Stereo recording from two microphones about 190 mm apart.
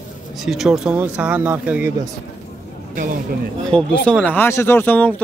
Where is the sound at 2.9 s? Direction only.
45° right (ahead or behind).